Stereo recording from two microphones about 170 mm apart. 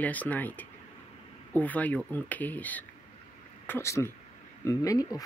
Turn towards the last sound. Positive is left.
turn(degrees=20)  # may be behind; listen again after turning